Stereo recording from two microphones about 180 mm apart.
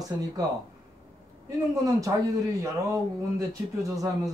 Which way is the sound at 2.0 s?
20° right (ahead or behind).